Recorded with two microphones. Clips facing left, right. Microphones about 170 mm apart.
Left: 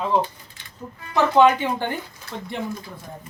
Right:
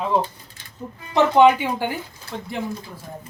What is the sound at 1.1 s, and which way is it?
Speech, 15° right (ahead or behind).